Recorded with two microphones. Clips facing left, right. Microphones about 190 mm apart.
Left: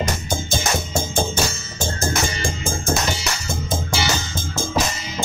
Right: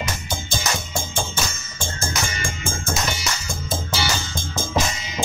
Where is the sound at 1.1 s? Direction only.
40° left (ahead or behind).